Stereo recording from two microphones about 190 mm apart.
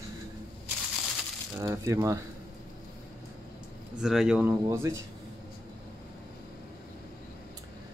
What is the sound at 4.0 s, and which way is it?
Speech, centre (ahead or behind).